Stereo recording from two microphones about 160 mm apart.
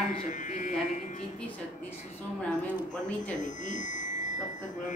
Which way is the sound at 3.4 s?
50° left (ahead or behind).